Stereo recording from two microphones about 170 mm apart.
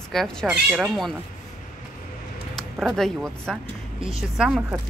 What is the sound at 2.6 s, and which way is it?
Speech, centre (ahead or behind).